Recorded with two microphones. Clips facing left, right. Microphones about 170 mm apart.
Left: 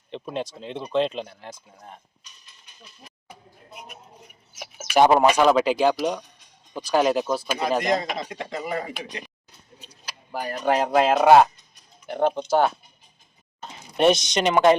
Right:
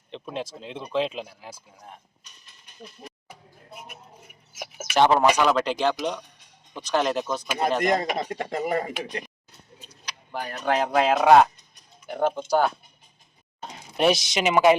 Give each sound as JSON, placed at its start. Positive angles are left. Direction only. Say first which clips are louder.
{"t": 0.1, "sound": "speech", "louder": "left 3 dB", "side_deg": 0}
{"t": 4.9, "sound": "speech", "louder": "left 2 dB", "side_deg": 10}
{"t": 7.9, "sound": "speech", "louder": "right 1 dB", "side_deg": -55}
{"t": 9.9, "sound": "speech", "louder": "left 1 dB", "side_deg": 5}
{"t": 13.9, "sound": "speech", "louder": "left 3 dB", "side_deg": 0}